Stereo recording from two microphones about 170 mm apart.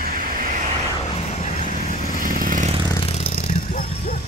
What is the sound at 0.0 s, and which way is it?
Vehicle, 55° right (ahead or behind).